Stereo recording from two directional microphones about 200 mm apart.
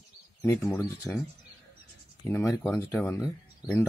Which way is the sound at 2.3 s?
10° left (ahead or behind).